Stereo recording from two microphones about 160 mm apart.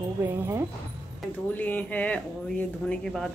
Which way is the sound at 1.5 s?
10° left (ahead or behind).